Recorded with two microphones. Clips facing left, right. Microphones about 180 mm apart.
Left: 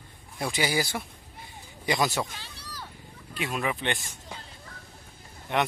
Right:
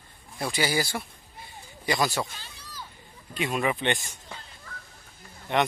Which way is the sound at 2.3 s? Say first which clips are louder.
Left 1 dB; 75° left (ahead or behind).